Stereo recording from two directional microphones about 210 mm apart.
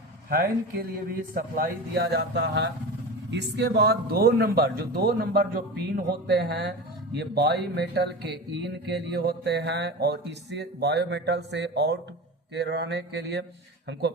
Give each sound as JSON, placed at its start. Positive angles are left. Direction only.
{"t": 0.3, "sound": "speech", "side_deg": -45}